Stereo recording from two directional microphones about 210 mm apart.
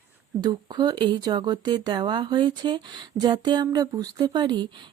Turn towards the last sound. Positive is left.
turn(degrees=-20)  # may be behind; listen again after turning